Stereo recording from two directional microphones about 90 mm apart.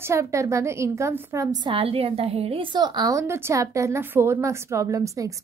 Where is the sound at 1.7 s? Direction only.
90° right.